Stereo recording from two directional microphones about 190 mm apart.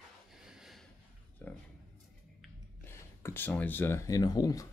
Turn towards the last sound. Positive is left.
turn(degrees=20)  # may be behind; listen again after turning